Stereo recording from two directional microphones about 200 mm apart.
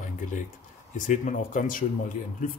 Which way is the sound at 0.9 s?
40° left (ahead or behind).